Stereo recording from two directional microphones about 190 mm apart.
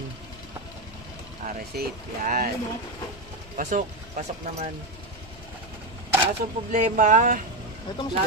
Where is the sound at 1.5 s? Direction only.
45° right (ahead or behind).